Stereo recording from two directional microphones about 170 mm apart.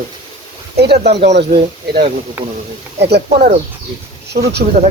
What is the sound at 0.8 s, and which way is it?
Speech, 75° right (ahead or behind).